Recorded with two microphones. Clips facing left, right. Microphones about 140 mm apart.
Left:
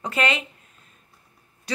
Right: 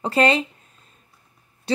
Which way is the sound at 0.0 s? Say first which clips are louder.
Right 6 dB; 35° right (ahead or behind).